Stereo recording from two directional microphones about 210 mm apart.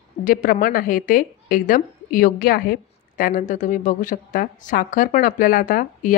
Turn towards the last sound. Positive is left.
turn(degrees=40)  # may be behind; listen again after turning